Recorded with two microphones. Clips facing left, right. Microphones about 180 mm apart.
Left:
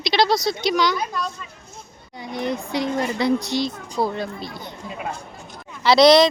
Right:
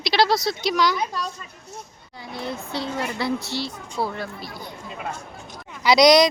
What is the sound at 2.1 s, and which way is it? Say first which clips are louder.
Speech: left 5 dB; 20° left (ahead or behind).